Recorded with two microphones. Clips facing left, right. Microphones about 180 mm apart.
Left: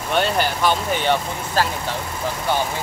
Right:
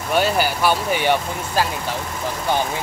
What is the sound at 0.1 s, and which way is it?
Speech, 5° right (ahead or behind).